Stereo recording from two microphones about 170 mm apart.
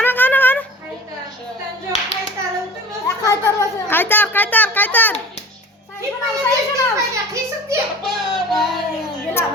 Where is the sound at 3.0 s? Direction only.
20° left (ahead or behind).